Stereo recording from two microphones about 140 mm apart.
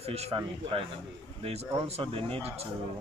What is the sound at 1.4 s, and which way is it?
Speech, 50° right (ahead or behind).